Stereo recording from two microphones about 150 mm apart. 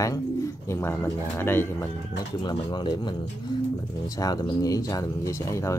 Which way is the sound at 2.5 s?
30° left (ahead or behind).